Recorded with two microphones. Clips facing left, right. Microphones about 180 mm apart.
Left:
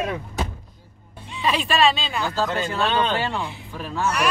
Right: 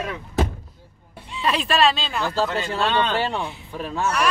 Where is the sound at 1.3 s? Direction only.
Centre (ahead or behind).